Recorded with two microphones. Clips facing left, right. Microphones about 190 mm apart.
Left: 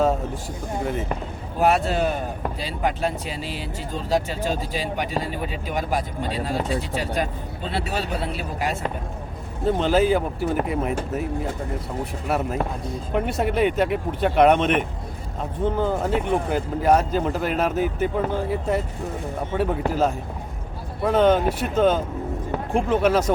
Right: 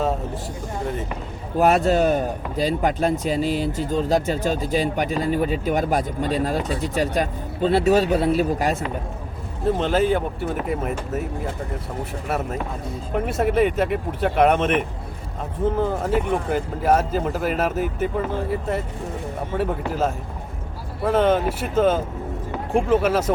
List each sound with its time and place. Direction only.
1.5 s speech: 45° right (ahead or behind)
9.6 s speech: centre (ahead or behind)
12.3 s speech: centre (ahead or behind)